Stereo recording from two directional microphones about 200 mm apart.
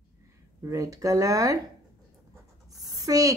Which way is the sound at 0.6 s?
15° right (ahead or behind).